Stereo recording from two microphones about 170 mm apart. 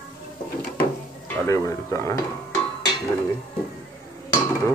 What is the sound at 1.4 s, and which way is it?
Speech, 15° left (ahead or behind).